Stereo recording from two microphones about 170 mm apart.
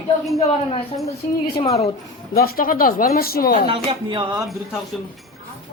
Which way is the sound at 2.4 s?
60° left (ahead or behind).